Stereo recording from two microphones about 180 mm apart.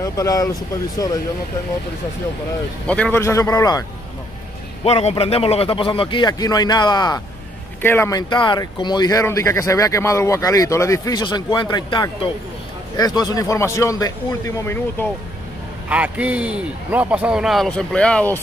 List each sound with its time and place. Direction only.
0.0 s speech: 20° left (ahead or behind)
2.9 s a man's voice: 10° left (ahead or behind)
4.8 s speech: 35° left (ahead or behind)
7.8 s speech: 15° left (ahead or behind)
15.9 s a man's voice: 5° right (ahead or behind); by 18.4 s 10° left (ahead or behind)